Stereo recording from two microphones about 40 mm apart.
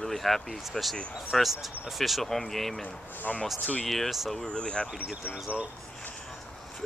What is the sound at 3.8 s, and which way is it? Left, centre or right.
Speech, centre.